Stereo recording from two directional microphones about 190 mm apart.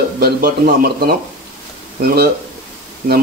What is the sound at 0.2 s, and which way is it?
Speech, 50° right (ahead or behind).